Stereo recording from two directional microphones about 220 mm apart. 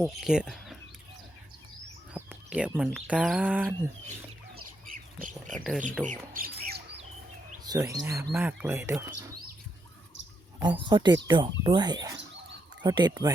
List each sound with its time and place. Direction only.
0.0 s speech: centre (ahead or behind)
2.1 s speech: 5° right (ahead or behind)
4.9 s bird: 40° right (ahead or behind)
5.5 s speech: centre (ahead or behind)
6.1 s squawk: 40° right (ahead or behind)
7.6 s speech: 15° right (ahead or behind)
10.6 s speech: 20° right (ahead or behind)